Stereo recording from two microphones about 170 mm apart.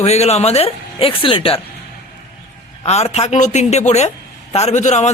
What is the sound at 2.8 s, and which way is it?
Speech, 40° left (ahead or behind).